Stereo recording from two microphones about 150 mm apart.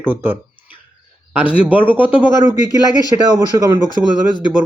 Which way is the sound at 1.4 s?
35° left (ahead or behind).